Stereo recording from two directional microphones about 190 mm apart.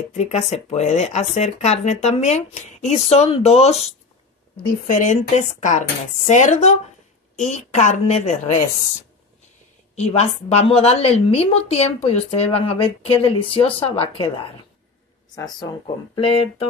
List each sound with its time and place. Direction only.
0.1 s a woman's voice: 35° left (ahead or behind)
9.9 s a woman's voice: 35° left (ahead or behind)